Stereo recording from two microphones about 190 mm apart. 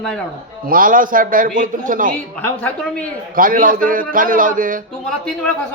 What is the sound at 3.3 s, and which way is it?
A man's voice, 45° right (ahead or behind).